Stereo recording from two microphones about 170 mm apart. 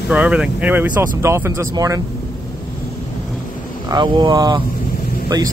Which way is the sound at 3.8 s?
25° right (ahead or behind).